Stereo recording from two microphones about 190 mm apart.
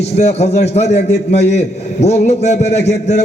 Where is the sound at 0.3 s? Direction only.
35° left (ahead or behind).